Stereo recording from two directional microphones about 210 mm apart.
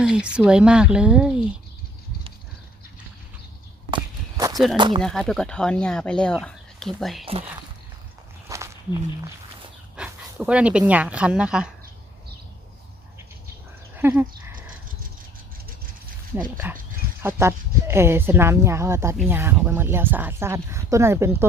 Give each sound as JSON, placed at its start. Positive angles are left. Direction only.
{"t": 0.0, "sound": "speech", "side_deg": -5}
{"t": 3.9, "sound": "walk", "side_deg": -20}
{"t": 4.8, "sound": "speech", "side_deg": -20}
{"t": 5.0, "sound": "speech", "side_deg": 0}
{"t": 8.4, "sound": "walk", "side_deg": -15}
{"t": 9.9, "sound": "speech", "side_deg": -5}
{"t": 13.9, "sound": "dog", "side_deg": -10}
{"t": 16.6, "sound": "speech", "side_deg": -10}